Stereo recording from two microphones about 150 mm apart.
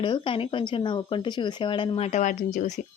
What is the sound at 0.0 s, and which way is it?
Speech, 35° left (ahead or behind).